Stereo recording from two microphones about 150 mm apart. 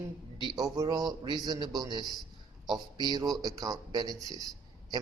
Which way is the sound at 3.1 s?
25° right (ahead or behind).